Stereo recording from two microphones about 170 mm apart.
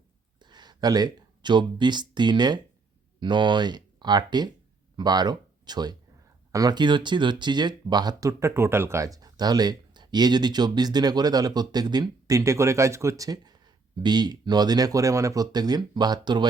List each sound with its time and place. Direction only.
0.3 s speech: 25° right (ahead or behind)